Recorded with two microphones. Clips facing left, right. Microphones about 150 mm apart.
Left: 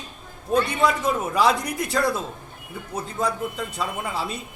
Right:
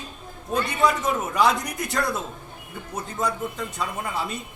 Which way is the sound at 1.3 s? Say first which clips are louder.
Left 1 dB; centre (ahead or behind).